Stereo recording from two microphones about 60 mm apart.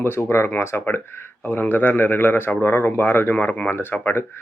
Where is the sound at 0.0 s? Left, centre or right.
Left.